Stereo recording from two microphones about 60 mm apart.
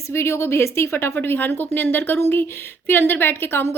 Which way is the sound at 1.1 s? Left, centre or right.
Left.